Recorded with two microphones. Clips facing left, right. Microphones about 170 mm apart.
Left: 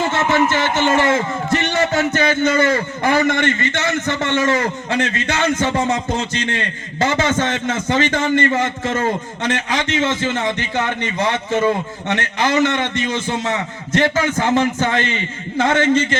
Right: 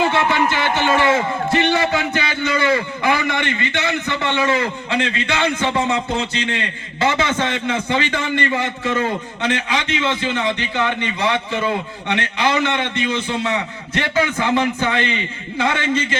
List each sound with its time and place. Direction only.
0.1 s a man's voice: 45° left (ahead or behind)